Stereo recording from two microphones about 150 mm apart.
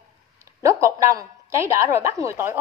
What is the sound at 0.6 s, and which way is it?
A woman's voice, 20° right (ahead or behind).